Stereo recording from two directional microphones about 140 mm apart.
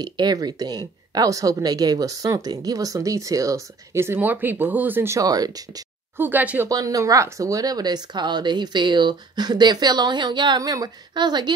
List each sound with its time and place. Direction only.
0.0 s a woman's voice: 30° right (ahead or behind)
6.1 s speech: 15° right (ahead or behind)
6.7 s speech: 25° right (ahead or behind)